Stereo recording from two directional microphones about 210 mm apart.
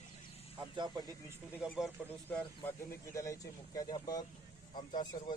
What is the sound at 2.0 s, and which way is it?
Speech, 5° right (ahead or behind).